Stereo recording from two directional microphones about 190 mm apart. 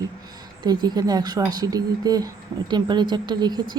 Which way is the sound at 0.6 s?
20° right (ahead or behind).